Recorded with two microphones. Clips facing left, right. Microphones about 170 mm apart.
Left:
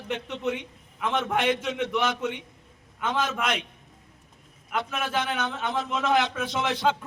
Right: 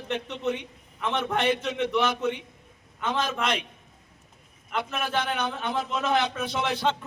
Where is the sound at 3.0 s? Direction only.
5° left (ahead or behind).